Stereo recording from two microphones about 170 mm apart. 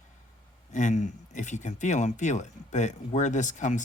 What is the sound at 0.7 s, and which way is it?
Speech, 45° left (ahead or behind).